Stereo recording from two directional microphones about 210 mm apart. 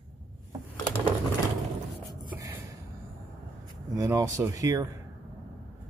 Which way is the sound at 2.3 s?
10° right (ahead or behind).